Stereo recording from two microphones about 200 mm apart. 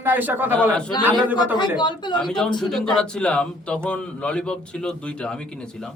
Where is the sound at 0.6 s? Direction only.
5° left (ahead or behind).